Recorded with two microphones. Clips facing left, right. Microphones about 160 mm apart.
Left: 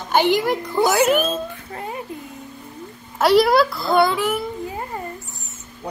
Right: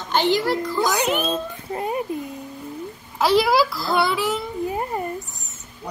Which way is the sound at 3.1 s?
Centre (ahead or behind).